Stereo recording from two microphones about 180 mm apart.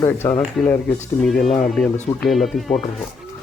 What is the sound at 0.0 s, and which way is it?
Speech, 15° left (ahead or behind).